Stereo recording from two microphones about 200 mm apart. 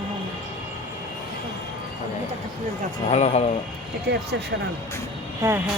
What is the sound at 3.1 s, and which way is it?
Speech, 35° left (ahead or behind).